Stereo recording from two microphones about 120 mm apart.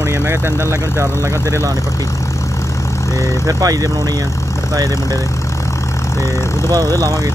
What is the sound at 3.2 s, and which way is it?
Speech, 30° right (ahead or behind).